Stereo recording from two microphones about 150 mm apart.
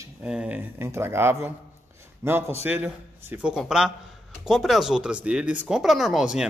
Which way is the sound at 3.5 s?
5° right (ahead or behind).